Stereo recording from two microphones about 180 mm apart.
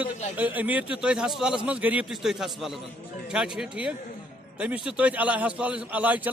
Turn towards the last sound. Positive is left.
turn(degrees=-10)  # may be behind; listen again after turning